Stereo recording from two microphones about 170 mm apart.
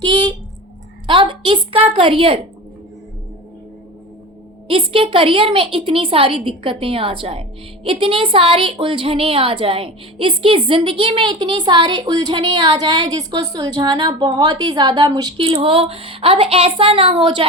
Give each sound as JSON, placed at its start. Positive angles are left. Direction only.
{"t": 0.0, "sound": "a woman's voice", "side_deg": -25}
{"t": 4.7, "sound": "a woman's voice", "side_deg": -30}